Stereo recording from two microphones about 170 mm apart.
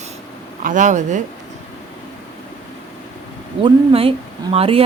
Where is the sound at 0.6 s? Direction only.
50° right (ahead or behind).